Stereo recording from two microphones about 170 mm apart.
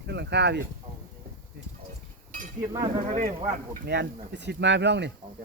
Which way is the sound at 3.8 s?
80° right.